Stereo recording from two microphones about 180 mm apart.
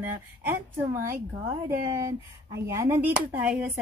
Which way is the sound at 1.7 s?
15° right (ahead or behind).